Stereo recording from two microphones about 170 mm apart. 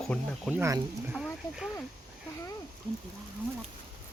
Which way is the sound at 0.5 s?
15° right (ahead or behind).